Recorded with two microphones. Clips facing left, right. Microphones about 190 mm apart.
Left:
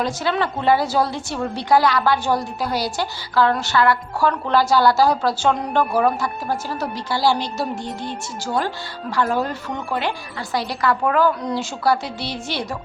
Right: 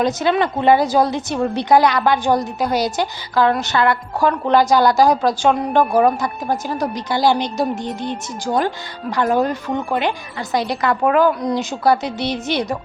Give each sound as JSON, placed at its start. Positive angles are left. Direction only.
{"t": 0.0, "sound": "a woman's voice", "side_deg": -20}